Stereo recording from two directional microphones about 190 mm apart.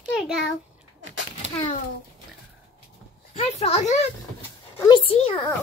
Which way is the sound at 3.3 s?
35° left (ahead or behind).